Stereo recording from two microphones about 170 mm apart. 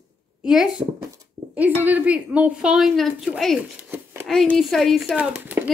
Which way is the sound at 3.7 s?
10° right (ahead or behind).